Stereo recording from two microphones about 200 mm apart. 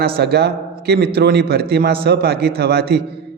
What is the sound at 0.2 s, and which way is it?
A man's voice, 55° right (ahead or behind).